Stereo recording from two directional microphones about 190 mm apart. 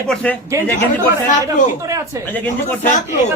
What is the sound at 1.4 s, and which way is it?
Speech, 15° right (ahead or behind).